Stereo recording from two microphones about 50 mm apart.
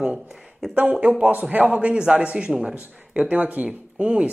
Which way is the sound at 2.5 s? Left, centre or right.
Centre.